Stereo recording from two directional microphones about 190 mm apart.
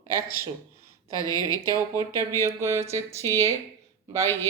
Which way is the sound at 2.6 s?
15° right (ahead or behind).